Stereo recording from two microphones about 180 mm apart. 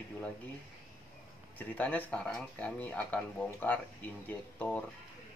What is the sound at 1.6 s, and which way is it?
Speech, 10° left (ahead or behind).